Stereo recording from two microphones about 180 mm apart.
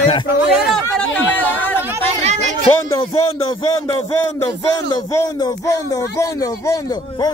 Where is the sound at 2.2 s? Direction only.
40° right (ahead or behind).